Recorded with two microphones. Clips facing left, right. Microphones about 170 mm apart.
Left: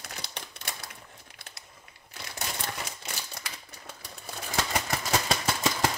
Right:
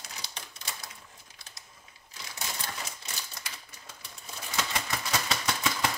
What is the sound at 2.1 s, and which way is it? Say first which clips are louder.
Typewriter: left 3 dB; 60° left (ahead or behind).